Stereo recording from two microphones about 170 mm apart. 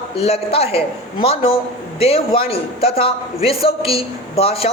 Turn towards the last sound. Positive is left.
turn(degrees=35)  # may be behind; listen again after turning